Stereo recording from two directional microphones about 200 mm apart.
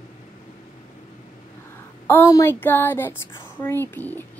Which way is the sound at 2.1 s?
15° left (ahead or behind).